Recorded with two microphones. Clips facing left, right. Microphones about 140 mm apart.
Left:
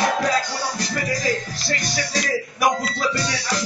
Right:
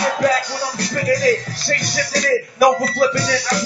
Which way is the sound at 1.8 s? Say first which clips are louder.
Right 5 dB; 70° right (ahead or behind).